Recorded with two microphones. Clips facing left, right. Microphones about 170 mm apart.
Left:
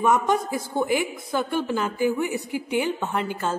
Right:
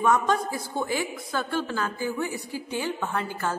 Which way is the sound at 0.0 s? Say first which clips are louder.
Left 2 dB; 15° left (ahead or behind).